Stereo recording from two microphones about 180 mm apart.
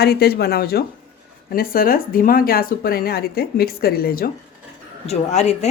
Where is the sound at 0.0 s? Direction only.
60° left (ahead or behind).